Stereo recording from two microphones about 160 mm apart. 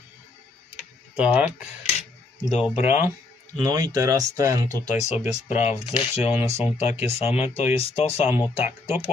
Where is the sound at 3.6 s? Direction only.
25° right (ahead or behind).